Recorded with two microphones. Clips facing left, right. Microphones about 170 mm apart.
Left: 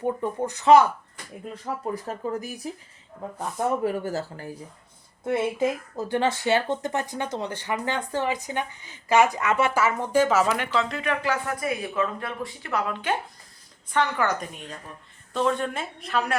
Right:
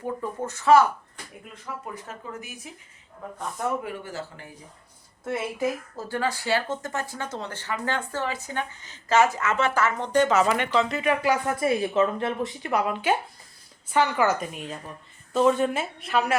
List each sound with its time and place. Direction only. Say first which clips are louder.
0.0 s speech: left 4 dB; 20° left (ahead or behind)
1.8 s speech: left 8 dB; 35° left (ahead or behind)
3.8 s speech: left 8 dB; 40° left (ahead or behind)
5.2 s speech: left 3 dB; 25° left (ahead or behind); by 11.3 s 10° right (ahead or behind)
11.6 s a woman's voice: right 5 dB; 30° right (ahead or behind); by 16.3 s 5° right (ahead or behind)